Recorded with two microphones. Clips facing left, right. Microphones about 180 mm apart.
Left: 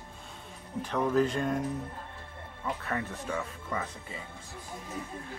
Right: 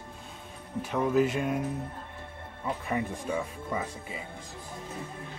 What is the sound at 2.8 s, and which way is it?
Speech, 10° right (ahead or behind).